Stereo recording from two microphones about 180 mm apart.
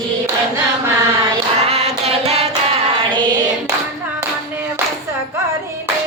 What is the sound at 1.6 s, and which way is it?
Music, 35° right (ahead or behind).